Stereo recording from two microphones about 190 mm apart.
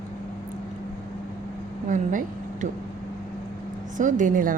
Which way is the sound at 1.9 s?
40° right (ahead or behind).